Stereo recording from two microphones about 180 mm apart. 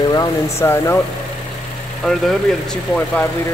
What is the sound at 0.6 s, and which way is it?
Speech, 15° left (ahead or behind).